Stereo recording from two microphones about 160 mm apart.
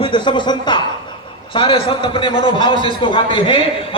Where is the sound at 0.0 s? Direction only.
30° left (ahead or behind).